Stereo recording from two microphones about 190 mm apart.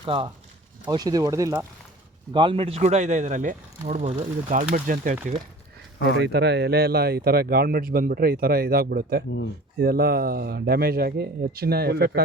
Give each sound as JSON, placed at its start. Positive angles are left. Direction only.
{"t": 0.0, "sound": "speech", "side_deg": -25}
{"t": 6.2, "sound": "speech", "side_deg": -60}